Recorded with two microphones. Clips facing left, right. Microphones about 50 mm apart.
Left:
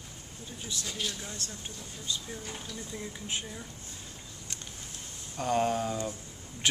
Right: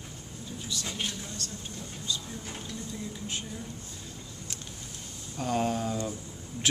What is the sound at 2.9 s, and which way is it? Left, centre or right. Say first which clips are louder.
Speech: left 2 dB; left.